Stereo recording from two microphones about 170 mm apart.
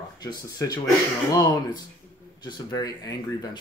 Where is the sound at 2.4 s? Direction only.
20° left (ahead or behind).